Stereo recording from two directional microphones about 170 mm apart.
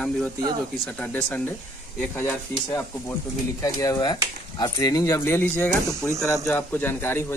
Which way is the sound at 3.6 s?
20° left (ahead or behind).